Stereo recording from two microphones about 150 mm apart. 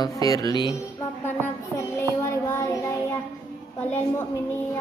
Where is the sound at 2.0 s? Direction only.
15° left (ahead or behind).